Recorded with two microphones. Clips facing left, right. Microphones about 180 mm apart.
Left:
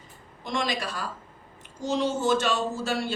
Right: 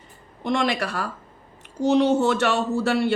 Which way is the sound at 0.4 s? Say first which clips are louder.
Right 6 dB; 65° right (ahead or behind).